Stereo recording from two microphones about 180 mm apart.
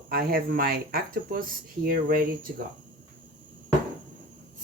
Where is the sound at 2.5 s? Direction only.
65° right (ahead or behind).